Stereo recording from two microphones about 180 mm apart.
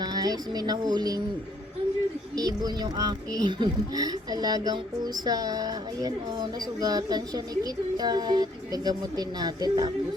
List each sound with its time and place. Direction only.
0.0 s a woman's voice: 20° right (ahead or behind)
2.3 s a woman's voice: 20° right (ahead or behind)